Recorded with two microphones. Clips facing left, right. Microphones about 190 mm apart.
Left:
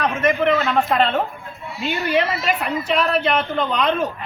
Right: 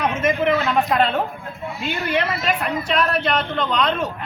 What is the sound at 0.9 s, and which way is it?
A woman's voice, centre (ahead or behind).